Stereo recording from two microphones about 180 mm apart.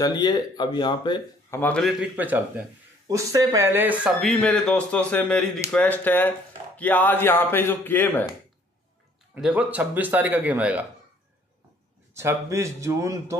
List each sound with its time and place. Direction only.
0.0 s speech: 20° left (ahead or behind)
1.6 s speech: 5° left (ahead or behind)
9.3 s speech: 5° right (ahead or behind)
12.1 s speech: 15° right (ahead or behind)